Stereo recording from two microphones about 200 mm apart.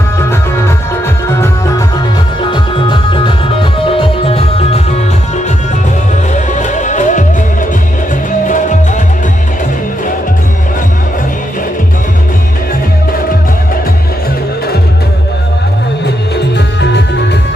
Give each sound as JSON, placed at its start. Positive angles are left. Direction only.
{"t": 2.5, "sound": "music", "side_deg": 25}
{"t": 6.5, "sound": "music", "side_deg": 40}
{"t": 8.5, "sound": "music", "side_deg": 40}
{"t": 16.5, "sound": "music", "side_deg": 60}